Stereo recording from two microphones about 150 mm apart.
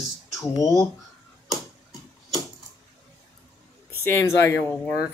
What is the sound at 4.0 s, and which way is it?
Speech, 20° left (ahead or behind).